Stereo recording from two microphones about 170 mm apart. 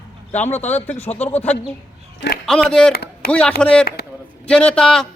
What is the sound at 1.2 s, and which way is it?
A man's voice, 10° left (ahead or behind).